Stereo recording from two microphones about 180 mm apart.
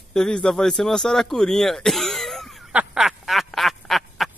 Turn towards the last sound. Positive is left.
turn(degrees=0)  # may be behind; listen again after turning